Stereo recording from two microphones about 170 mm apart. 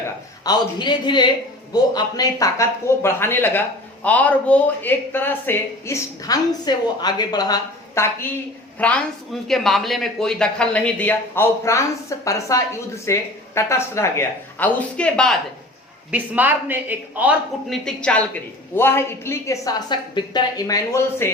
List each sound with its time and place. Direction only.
0.4 s a man's voice: 25° left (ahead or behind); by 15.4 s 5° left (ahead or behind)
16.1 s a woman's voice: 10° right (ahead or behind)
17.7 s a woman's voice: 5° left (ahead or behind)